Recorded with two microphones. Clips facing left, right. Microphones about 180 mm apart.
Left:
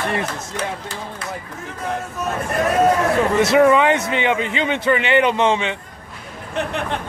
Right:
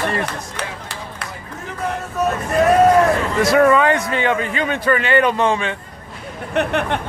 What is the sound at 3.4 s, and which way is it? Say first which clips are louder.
A man's voice: even; 25° left (ahead or behind).